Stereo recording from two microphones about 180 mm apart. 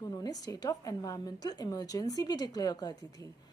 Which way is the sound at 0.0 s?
20° left (ahead or behind).